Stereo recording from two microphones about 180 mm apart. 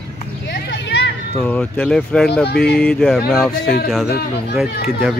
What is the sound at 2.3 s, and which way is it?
Speech, 65° left (ahead or behind).